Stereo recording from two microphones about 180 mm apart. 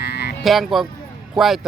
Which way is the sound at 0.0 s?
65° left (ahead or behind).